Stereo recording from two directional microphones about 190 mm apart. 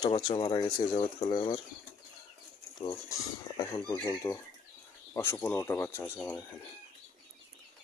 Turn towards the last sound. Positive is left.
turn(degrees=10)  # may be behind; listen again after turning